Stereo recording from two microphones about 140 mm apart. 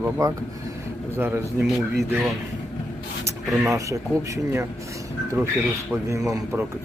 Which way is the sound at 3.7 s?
20° right (ahead or behind).